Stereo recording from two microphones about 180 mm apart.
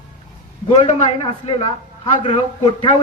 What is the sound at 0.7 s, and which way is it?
A man's voice, 40° left (ahead or behind).